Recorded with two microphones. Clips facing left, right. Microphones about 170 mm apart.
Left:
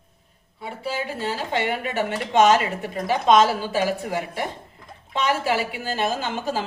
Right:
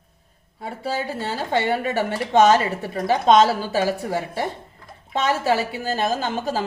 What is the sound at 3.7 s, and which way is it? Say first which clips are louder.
Speech: right 1 dB; 15° left (ahead or behind).